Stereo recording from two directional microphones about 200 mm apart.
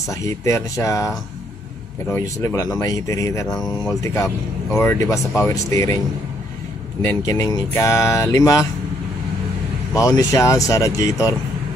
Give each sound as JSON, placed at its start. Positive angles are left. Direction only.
{"t": 0.1, "sound": "speech", "side_deg": 15}
{"t": 2.1, "sound": "speech", "side_deg": 15}
{"t": 7.0, "sound": "speech", "side_deg": 15}
{"t": 9.9, "sound": "speech", "side_deg": 15}